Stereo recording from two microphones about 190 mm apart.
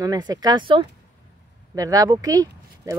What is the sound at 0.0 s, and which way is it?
Speech, 20° right (ahead or behind).